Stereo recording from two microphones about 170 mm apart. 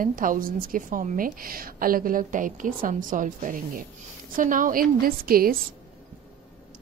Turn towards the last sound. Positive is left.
turn(degrees=-60)  # may be behind; listen again after turning